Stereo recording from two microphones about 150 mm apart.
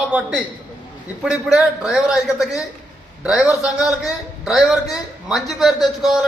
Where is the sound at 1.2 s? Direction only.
5° right (ahead or behind).